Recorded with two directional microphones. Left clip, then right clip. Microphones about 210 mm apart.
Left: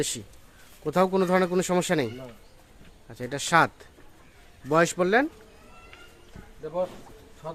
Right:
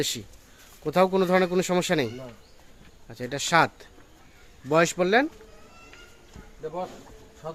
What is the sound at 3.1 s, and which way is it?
Speech, centre (ahead or behind).